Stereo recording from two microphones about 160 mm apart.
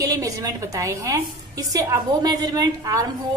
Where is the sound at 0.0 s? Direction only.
20° right (ahead or behind).